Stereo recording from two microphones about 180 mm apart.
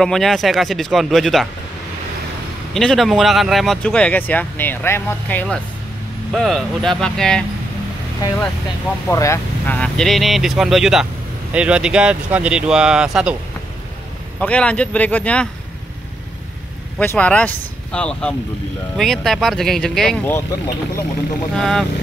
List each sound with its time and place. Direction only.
0.0 s speech: centre (ahead or behind)
2.7 s speech: centre (ahead or behind)
9.0 s speech: 15° left (ahead or behind); by 13.4 s 5° right (ahead or behind)
14.4 s speech: 5° left (ahead or behind)
17.0 s speech: 10° left (ahead or behind)
21.5 s speech: centre (ahead or behind)